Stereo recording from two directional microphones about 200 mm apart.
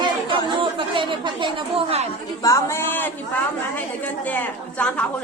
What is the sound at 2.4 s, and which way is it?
Speech, 15° left (ahead or behind).